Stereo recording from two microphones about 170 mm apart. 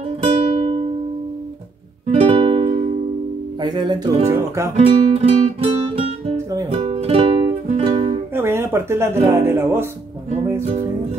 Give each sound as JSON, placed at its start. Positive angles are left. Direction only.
{"t": 0.2, "sound": "music", "side_deg": -30}
{"t": 2.0, "sound": "music", "side_deg": -35}
{"t": 4.3, "sound": "speech", "side_deg": -15}
{"t": 4.7, "sound": "music", "side_deg": -35}
{"t": 6.3, "sound": "music", "side_deg": -20}
{"t": 8.4, "sound": "speech", "side_deg": -15}